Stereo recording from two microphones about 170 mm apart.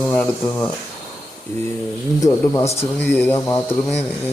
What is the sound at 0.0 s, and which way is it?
Speech, 10° left (ahead or behind).